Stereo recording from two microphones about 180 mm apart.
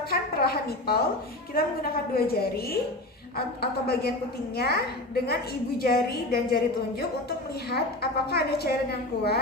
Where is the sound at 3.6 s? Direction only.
60° left (ahead or behind).